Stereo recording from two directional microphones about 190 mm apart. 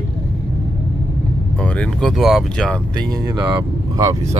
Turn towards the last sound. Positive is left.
turn(degrees=-20)  # may be behind; listen again after turning